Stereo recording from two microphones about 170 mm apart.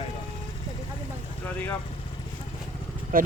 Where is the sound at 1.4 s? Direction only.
10° left (ahead or behind).